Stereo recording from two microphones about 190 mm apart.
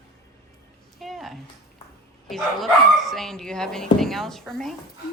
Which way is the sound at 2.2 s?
Centre (ahead or behind).